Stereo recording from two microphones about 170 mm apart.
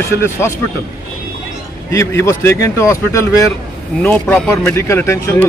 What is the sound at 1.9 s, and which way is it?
Speech, 15° left (ahead or behind).